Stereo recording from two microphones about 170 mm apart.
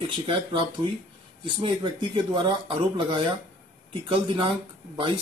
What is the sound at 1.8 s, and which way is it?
Speech, 30° right (ahead or behind).